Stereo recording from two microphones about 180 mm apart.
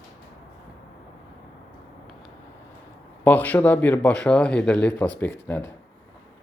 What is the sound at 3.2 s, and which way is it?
Speech, 10° left (ahead or behind).